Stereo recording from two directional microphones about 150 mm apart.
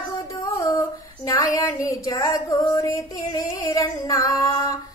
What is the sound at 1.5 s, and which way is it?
Female singing, 25° left (ahead or behind).